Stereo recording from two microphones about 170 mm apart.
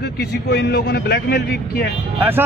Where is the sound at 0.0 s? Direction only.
70° left (ahead or behind).